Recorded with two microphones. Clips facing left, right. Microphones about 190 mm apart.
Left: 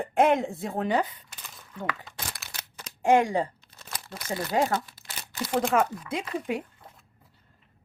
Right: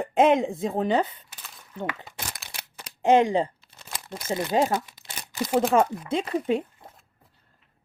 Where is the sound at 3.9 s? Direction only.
25° right (ahead or behind).